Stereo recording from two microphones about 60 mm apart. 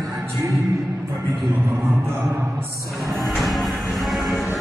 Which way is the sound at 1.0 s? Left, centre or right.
Right.